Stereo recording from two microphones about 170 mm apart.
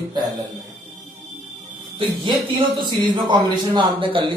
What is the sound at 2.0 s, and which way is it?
Speech, 25° right (ahead or behind).